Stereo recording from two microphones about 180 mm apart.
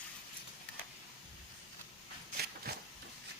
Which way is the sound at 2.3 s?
60° right (ahead or behind).